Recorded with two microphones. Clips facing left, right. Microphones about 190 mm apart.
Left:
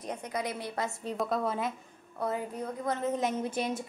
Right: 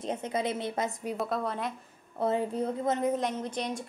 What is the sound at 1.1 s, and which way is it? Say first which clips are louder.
Speech: left 4 dB; centre (ahead or behind).